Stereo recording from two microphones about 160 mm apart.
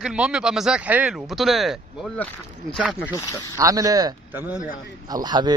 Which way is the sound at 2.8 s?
5° right (ahead or behind).